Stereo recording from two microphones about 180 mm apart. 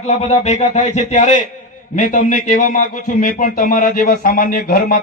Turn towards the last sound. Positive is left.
turn(degrees=55)  # may be behind; listen again after turning